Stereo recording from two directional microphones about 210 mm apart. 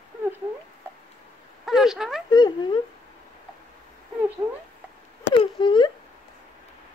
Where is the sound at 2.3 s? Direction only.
20° left (ahead or behind).